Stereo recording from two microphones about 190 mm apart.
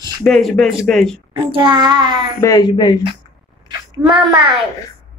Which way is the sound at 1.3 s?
25° right (ahead or behind).